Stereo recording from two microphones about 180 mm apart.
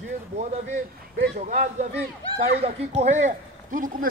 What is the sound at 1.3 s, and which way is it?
A man's voice, 40° right (ahead or behind).